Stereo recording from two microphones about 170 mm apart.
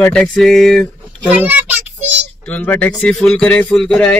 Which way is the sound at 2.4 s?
5° left (ahead or behind).